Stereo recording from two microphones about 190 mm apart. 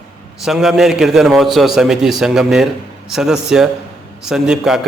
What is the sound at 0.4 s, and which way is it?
A man's voice, centre (ahead or behind).